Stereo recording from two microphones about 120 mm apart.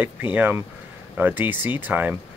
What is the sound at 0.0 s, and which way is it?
Speech, 15° right (ahead or behind).